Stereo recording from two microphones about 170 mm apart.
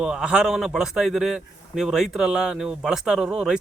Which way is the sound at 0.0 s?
5° right (ahead or behind).